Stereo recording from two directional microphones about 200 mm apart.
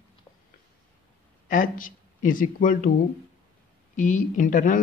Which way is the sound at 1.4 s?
40° left (ahead or behind).